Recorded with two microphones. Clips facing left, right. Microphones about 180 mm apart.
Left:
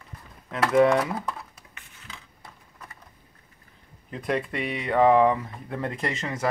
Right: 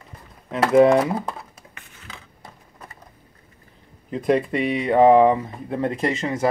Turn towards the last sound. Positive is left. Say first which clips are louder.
# right 7 dB
turn(degrees=-25)  # may be behind; listen again after turning